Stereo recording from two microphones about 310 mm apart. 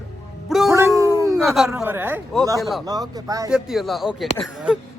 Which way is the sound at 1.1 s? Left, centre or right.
Centre.